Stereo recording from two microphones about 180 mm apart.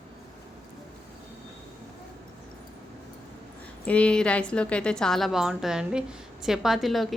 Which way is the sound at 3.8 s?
5° left (ahead or behind).